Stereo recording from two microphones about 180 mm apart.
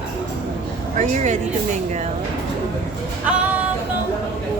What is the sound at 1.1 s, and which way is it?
Speech, 40° right (ahead or behind).